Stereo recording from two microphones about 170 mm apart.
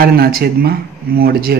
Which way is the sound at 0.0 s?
60° right (ahead or behind).